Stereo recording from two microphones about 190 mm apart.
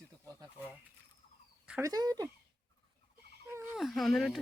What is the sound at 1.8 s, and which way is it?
Speech, 20° right (ahead or behind).